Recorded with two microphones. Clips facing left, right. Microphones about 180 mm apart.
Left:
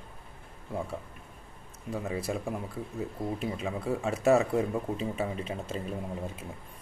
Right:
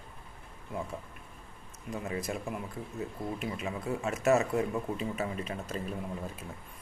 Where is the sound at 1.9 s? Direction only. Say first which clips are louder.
Left 3 dB; 30° left (ahead or behind).